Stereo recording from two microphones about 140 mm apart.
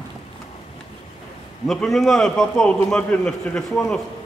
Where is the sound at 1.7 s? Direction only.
Centre (ahead or behind).